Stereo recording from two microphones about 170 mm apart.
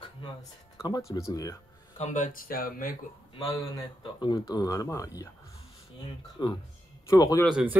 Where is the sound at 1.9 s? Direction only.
45° left (ahead or behind).